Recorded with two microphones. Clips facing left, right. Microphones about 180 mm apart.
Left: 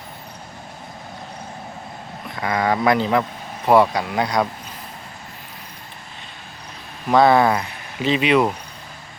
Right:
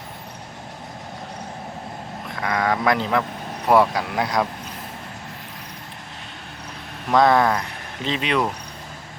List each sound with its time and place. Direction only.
2.4 s speech: centre (ahead or behind)
7.1 s speech: 5° left (ahead or behind)